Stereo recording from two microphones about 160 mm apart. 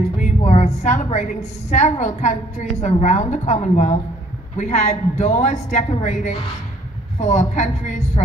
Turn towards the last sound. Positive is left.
turn(degrees=45)  # may be behind; listen again after turning